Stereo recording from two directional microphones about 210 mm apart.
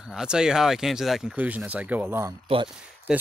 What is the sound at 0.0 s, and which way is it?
Speech, 5° right (ahead or behind).